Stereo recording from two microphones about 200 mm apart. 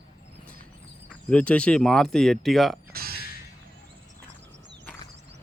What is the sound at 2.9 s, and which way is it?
Music, 50° right (ahead or behind).